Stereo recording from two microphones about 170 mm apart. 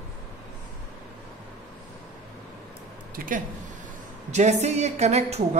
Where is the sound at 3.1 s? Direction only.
50° right (ahead or behind).